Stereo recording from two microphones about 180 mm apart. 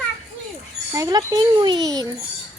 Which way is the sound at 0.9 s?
20° right (ahead or behind).